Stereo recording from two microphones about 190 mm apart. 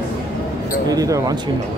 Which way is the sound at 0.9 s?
20° right (ahead or behind).